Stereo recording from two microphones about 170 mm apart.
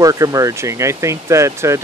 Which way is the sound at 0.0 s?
20° right (ahead or behind).